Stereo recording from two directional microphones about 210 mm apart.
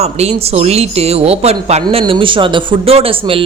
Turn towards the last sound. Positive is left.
turn(degrees=-25)  # may be behind; listen again after turning